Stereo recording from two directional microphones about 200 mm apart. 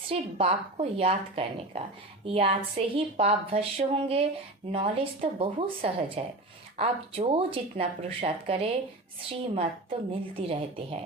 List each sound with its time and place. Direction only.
0.1 s a woman's voice: 30° right (ahead or behind)